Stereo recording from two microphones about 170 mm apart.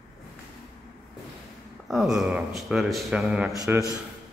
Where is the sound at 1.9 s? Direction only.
Centre (ahead or behind).